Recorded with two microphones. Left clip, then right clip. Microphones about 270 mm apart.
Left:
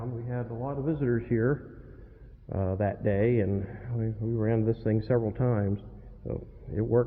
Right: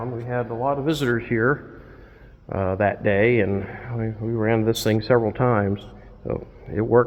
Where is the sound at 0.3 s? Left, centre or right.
Right.